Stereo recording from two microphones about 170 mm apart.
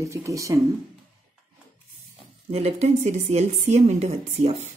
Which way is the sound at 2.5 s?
40° right (ahead or behind).